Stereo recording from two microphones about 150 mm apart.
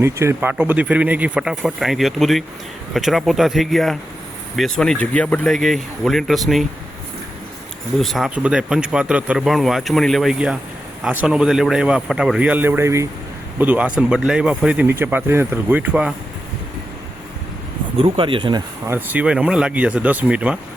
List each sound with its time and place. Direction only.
0.0 s speech: 15° right (ahead or behind); by 6.7 s centre (ahead or behind)
7.9 s speech: centre (ahead or behind)
17.9 s speech: 35° right (ahead or behind)
18.9 s speech: 10° right (ahead or behind)